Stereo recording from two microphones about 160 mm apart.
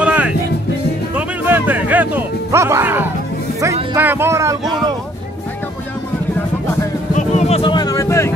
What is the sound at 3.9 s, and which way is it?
Speech, 15° right (ahead or behind).